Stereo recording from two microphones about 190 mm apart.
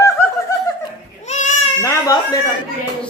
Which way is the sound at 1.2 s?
40° left (ahead or behind).